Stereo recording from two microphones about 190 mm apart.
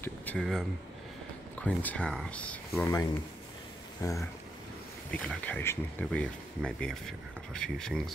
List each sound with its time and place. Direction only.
0.0 s speech: 10° left (ahead or behind)
5.1 s speech: 5° left (ahead or behind)